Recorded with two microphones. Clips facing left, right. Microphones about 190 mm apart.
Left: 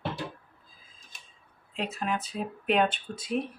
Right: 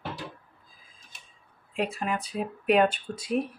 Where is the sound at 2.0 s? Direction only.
5° right (ahead or behind).